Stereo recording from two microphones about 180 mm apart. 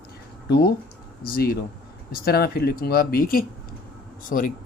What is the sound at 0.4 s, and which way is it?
Speech, 65° left (ahead or behind).